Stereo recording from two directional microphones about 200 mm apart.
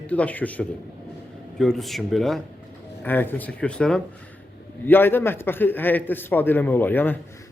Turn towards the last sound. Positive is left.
turn(degrees=10)  # may be behind; listen again after turning